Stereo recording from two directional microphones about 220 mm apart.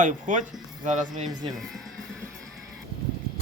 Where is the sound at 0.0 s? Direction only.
35° right (ahead or behind).